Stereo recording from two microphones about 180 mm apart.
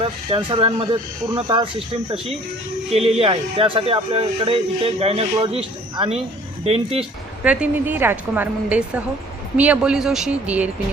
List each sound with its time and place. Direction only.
0.0 s speech: 30° right (ahead or behind)
2.9 s speech: 35° right (ahead or behind)
7.4 s a woman's voice: 5° right (ahead or behind)